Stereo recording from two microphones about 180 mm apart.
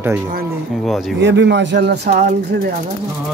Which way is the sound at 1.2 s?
75° right (ahead or behind).